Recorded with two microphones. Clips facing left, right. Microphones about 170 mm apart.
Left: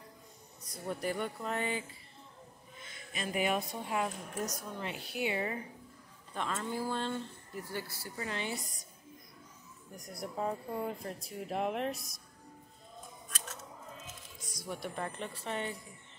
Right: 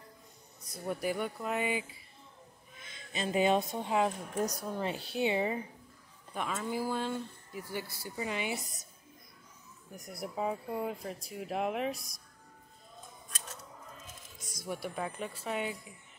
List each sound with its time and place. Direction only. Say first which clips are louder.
0.8 s speech: right 2 dB; 5° right (ahead or behind)
2.9 s a woman's voice: right 4 dB; 25° right (ahead or behind)
4.6 s a woman's voice: right 5 dB; 35° right (ahead or behind)
6.3 s speech: right 1 dB; 5° right (ahead or behind)
9.9 s speech: right 1 dB; centre (ahead or behind)
14.7 s speech: right 2 dB; 5° right (ahead or behind)